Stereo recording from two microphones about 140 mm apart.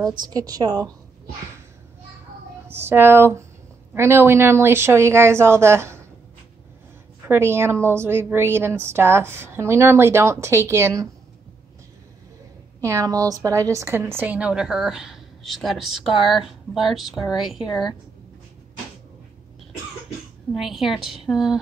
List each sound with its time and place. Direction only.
0.2 s a woman's voice: 25° right (ahead or behind)
2.7 s a woman's voice: 15° right (ahead or behind)
7.2 s a woman's voice: 15° right (ahead or behind)
12.8 s a woman's voice: 25° right (ahead or behind); by 17.6 s centre (ahead or behind)
17.6 s a woman's voice: 30° left (ahead or behind)
20.5 s a woman's voice: centre (ahead or behind)